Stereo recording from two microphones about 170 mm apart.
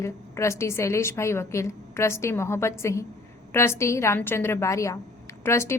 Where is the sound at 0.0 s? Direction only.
15° left (ahead or behind).